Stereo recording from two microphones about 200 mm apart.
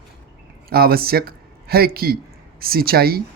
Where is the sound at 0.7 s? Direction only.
50° right (ahead or behind).